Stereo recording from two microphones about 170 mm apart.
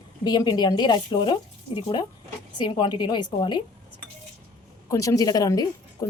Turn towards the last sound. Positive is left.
turn(degrees=20)  # may be behind; listen again after turning